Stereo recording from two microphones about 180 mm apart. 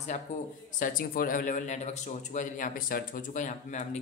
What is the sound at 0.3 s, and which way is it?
Speech, 40° left (ahead or behind).